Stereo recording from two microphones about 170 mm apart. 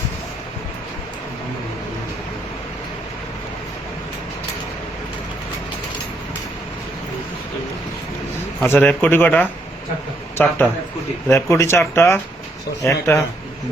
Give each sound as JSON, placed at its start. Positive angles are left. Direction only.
{"t": 8.6, "sound": "speech", "side_deg": 10}